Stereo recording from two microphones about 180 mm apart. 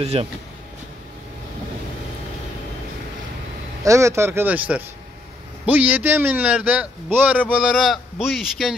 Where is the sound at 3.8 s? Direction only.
15° right (ahead or behind).